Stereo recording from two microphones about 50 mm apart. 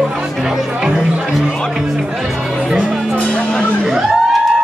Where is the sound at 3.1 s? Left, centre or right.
Left.